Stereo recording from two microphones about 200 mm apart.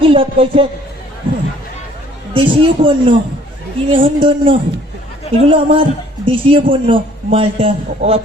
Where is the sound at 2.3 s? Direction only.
25° right (ahead or behind).